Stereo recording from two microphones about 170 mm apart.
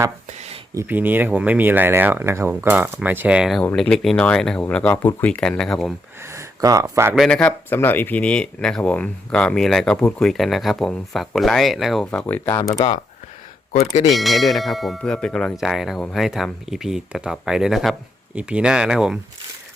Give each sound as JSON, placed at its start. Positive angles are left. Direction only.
{"t": 0.3, "sound": "a sound", "side_deg": -40}
{"t": 0.7, "sound": "speech", "side_deg": -15}
{"t": 3.6, "sound": "speech", "side_deg": 5}
{"t": 6.2, "sound": "speech", "side_deg": -20}
{"t": 7.2, "sound": "speech", "side_deg": 5}
{"t": 12.2, "sound": "speech", "side_deg": 15}
{"t": 14.1, "sound": "speech", "side_deg": 0}